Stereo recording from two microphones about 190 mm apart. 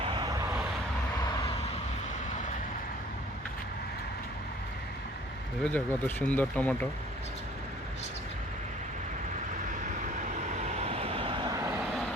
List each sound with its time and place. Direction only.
0.0 s vehicle: 25° right (ahead or behind)
5.6 s speech: 10° left (ahead or behind)
10.3 s vehicle: 35° right (ahead or behind); by 11.7 s 20° right (ahead or behind)